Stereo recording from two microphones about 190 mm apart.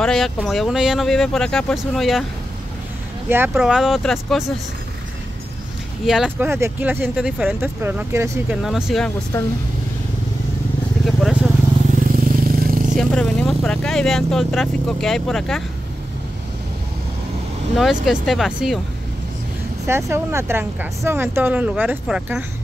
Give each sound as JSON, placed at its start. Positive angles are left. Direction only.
{"t": 0.0, "sound": "speech", "side_deg": 5}
{"t": 3.3, "sound": "speech", "side_deg": -10}
{"t": 6.0, "sound": "speech", "side_deg": 0}
{"t": 11.1, "sound": "vehicle", "side_deg": 0}
{"t": 12.2, "sound": "vehicle", "side_deg": -50}
{"t": 12.9, "sound": "speech", "side_deg": 5}
{"t": 17.7, "sound": "speech", "side_deg": 0}
{"t": 20.1, "sound": "speech", "side_deg": -15}